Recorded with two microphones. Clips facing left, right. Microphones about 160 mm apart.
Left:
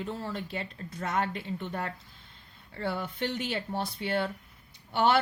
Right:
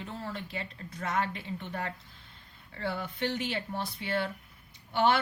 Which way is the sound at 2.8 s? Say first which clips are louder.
Left 1 dB; 40° left (ahead or behind).